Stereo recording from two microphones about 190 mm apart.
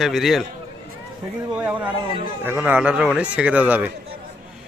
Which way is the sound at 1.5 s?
5° right (ahead or behind).